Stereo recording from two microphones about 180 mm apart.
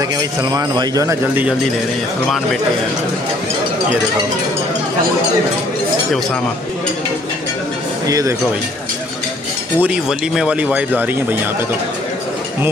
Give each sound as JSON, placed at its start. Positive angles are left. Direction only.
{"t": 0.4, "sound": "speech", "side_deg": -20}
{"t": 8.1, "sound": "speech", "side_deg": -20}
{"t": 9.8, "sound": "speech", "side_deg": -5}